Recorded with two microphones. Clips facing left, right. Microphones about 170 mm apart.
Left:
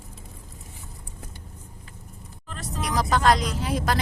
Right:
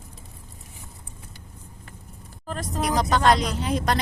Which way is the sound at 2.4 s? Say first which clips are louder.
Right 6 dB; 45° right (ahead or behind).